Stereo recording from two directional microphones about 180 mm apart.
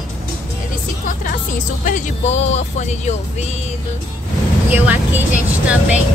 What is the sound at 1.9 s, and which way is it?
Speech, 40° left (ahead or behind).